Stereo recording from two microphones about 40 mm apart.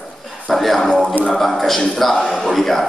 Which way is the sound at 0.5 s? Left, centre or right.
Centre.